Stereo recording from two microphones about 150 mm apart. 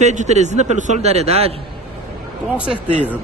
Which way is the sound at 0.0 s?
50° right (ahead or behind).